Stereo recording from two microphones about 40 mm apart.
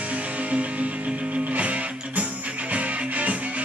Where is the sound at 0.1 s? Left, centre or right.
Right.